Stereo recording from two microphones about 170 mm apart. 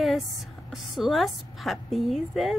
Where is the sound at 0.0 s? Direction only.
Centre (ahead or behind).